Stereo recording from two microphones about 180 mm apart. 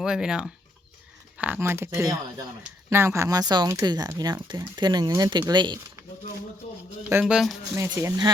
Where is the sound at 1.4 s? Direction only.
10° right (ahead or behind).